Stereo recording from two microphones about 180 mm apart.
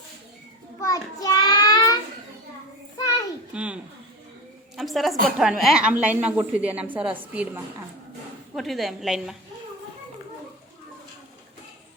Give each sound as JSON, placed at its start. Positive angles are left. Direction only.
{"t": 0.8, "sound": "child singing", "side_deg": 20}
{"t": 3.5, "sound": "speech", "side_deg": -5}
{"t": 4.8, "sound": "a woman's voice", "side_deg": 0}